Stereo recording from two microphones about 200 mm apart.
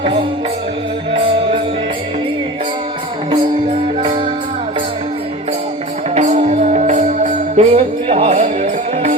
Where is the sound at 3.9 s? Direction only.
25° right (ahead or behind).